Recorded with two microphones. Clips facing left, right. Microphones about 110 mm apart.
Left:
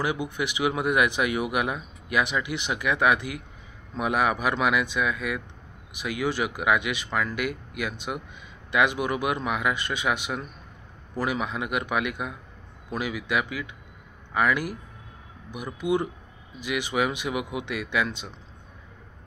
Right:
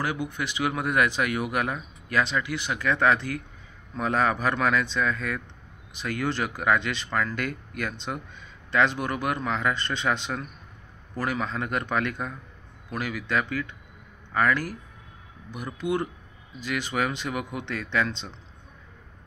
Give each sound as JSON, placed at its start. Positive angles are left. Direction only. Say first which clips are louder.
{"t": 0.0, "sound": "speech", "louder": "left 2 dB", "side_deg": 15}